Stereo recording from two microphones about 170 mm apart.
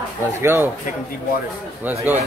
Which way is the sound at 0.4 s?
15° right (ahead or behind).